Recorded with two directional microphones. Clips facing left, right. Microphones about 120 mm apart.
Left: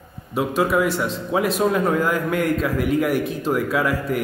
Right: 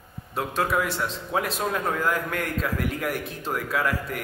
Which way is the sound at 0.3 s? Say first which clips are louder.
Left 6 dB; 10° left (ahead or behind).